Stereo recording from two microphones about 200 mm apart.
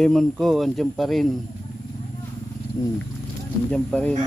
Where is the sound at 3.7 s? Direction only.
5° left (ahead or behind).